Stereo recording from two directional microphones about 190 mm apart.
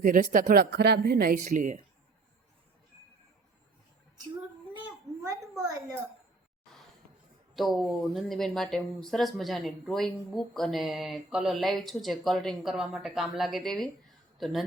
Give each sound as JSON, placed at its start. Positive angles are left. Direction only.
{"t": 0.0, "sound": "speech", "side_deg": -45}
{"t": 5.3, "sound": "a woman's voice", "side_deg": -20}
{"t": 7.5, "sound": "speech", "side_deg": 0}